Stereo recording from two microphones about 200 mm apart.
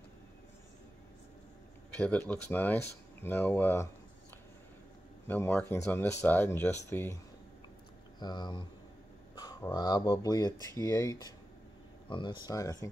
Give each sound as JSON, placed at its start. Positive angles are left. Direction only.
{"t": 2.0, "sound": "speech", "side_deg": 5}
{"t": 5.3, "sound": "speech", "side_deg": 10}
{"t": 8.2, "sound": "speech", "side_deg": 20}